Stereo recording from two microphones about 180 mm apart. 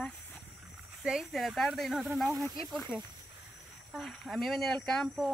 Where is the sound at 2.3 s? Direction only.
25° right (ahead or behind).